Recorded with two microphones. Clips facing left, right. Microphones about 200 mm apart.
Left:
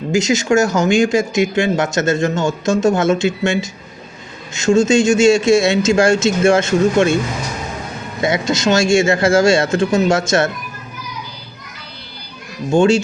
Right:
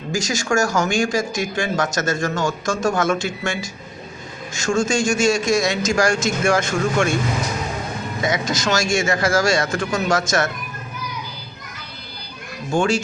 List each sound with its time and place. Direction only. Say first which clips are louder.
0.1 s speech: left 7 dB; 25° left (ahead or behind)
8.2 s speech: left 6 dB; 25° left (ahead or behind)
12.7 s speech: left 7 dB; 25° left (ahead or behind)